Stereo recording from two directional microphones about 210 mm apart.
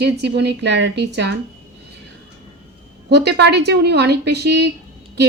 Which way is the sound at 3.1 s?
55° right (ahead or behind).